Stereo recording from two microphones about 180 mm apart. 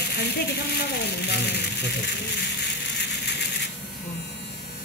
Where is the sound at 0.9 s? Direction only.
70° left (ahead or behind).